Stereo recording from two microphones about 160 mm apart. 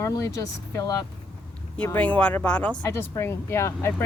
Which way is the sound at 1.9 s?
10° left (ahead or behind).